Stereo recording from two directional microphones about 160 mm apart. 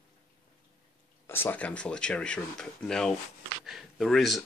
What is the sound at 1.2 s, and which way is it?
Speech, 15° left (ahead or behind).